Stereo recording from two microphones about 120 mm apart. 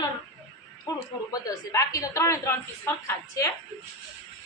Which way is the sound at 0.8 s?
30° left (ahead or behind).